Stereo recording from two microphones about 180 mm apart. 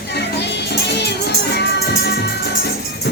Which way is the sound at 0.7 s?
65° left (ahead or behind).